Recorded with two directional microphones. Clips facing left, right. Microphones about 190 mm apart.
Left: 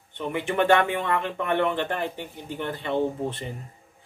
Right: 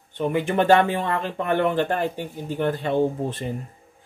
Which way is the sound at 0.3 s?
35° right (ahead or behind).